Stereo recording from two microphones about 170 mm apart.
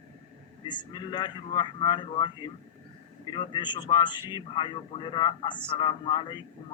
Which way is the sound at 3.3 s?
25° left (ahead or behind).